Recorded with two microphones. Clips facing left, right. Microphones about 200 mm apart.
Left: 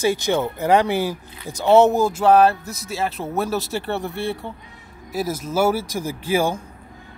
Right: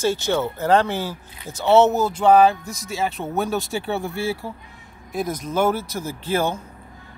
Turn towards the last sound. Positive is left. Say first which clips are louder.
# left 2 dB
turn(degrees=10)  # may be behind; listen again after turning